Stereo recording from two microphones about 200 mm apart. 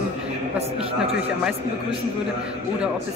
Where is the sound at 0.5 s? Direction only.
30° right (ahead or behind).